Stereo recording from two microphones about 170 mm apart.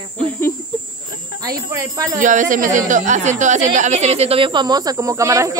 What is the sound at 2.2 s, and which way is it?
A woman's voice, 50° right (ahead or behind).